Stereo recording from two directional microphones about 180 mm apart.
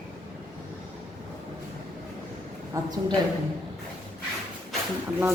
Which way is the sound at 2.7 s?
20° right (ahead or behind).